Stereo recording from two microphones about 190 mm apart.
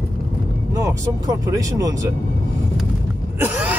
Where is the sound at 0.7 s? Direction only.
15° right (ahead or behind).